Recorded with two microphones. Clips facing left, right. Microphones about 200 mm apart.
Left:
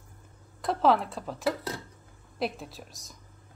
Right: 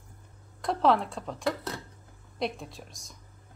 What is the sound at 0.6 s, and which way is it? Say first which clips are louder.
Speech: even; centre (ahead or behind).